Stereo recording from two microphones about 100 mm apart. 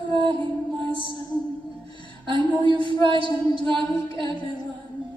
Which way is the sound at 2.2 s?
55° right (ahead or behind).